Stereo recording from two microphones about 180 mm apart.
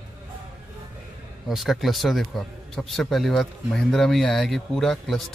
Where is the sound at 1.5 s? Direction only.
Centre (ahead or behind).